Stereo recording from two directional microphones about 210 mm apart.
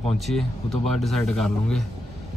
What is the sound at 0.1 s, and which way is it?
Speech, centre (ahead or behind).